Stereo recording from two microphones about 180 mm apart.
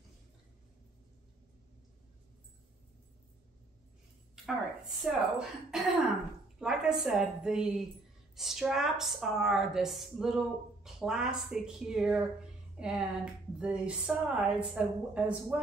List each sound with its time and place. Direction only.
4.5 s a woman's voice: 5° right (ahead or behind)